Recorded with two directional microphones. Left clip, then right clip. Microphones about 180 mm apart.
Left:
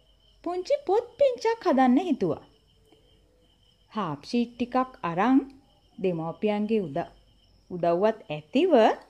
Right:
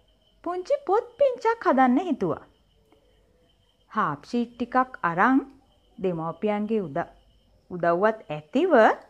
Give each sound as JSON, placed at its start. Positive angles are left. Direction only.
{"t": 0.4, "sound": "speech", "side_deg": 10}
{"t": 3.9, "sound": "speech", "side_deg": 10}